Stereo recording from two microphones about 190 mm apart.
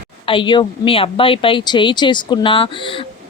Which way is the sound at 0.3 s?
25° left (ahead or behind).